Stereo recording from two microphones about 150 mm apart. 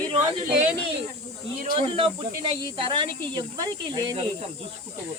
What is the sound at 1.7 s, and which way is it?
Speech, 40° right (ahead or behind).